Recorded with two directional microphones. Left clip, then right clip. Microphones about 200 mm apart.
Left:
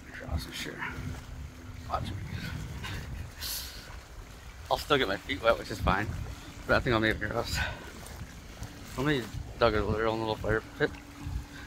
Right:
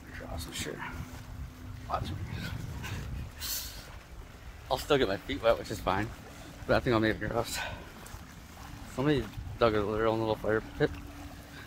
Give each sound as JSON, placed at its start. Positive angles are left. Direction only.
{"t": 0.4, "sound": "speech", "side_deg": -20}
{"t": 1.9, "sound": "dog", "side_deg": -20}
{"t": 4.6, "sound": "speech", "side_deg": -20}
{"t": 9.0, "sound": "speech", "side_deg": -20}